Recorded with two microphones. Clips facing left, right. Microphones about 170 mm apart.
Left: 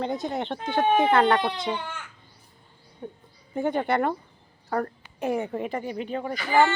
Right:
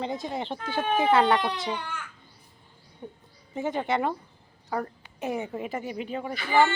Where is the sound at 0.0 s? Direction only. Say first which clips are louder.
Left 3 dB; centre (ahead or behind).